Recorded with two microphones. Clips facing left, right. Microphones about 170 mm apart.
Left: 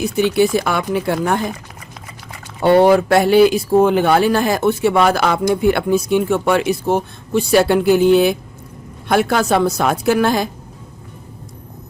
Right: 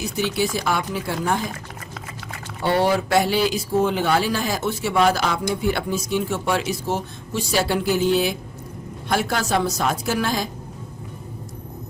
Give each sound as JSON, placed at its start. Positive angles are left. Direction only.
{"t": 0.0, "sound": "speech", "side_deg": 60}
{"t": 2.6, "sound": "speech", "side_deg": 55}